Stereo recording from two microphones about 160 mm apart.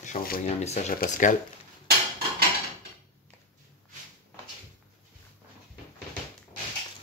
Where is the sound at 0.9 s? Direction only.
55° left (ahead or behind).